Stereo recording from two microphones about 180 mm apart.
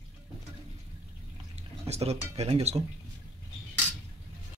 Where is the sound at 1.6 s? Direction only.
35° right (ahead or behind).